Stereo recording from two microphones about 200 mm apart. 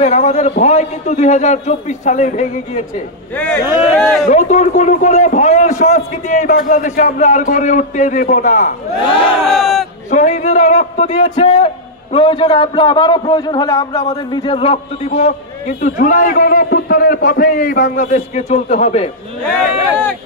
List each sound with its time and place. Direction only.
0.0 s a man's voice: 35° left (ahead or behind)
3.3 s speech: 10° left (ahead or behind)
3.6 s speech: 10° right (ahead or behind)
4.0 s a man's voice: centre (ahead or behind)
4.3 s a man's voice: 35° left (ahead or behind)
9.5 s battle cry: centre (ahead or behind)
10.1 s a man's voice: 35° left (ahead or behind)
11.3 s a man's voice: 25° left (ahead or behind)